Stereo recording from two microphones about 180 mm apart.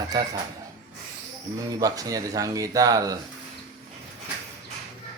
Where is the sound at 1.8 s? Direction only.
20° right (ahead or behind).